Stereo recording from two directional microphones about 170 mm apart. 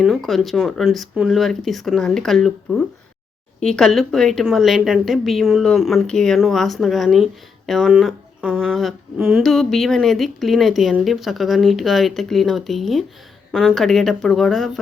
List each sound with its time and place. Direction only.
0.0 s speech: centre (ahead or behind)